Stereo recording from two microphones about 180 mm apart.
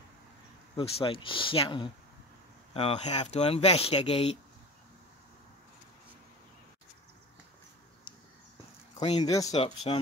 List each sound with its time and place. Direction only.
0.7 s speech: 30° left (ahead or behind)
8.9 s a sound: 35° left (ahead or behind)
9.2 s speech: 20° left (ahead or behind)
9.5 s speech: 30° left (ahead or behind)